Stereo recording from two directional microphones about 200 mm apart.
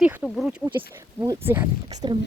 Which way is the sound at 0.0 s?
5° right (ahead or behind).